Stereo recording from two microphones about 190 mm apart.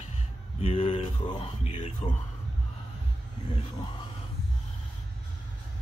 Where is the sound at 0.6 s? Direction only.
30° left (ahead or behind).